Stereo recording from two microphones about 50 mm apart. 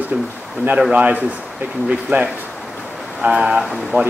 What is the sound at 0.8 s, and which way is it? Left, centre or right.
Speech, right.